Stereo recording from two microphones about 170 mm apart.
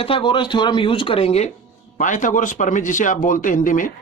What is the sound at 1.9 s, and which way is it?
Speech, 50° left (ahead or behind).